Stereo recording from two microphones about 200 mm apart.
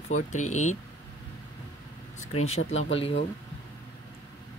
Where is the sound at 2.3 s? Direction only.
30° left (ahead or behind).